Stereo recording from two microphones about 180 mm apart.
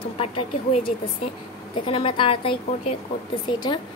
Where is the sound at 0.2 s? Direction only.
30° left (ahead or behind).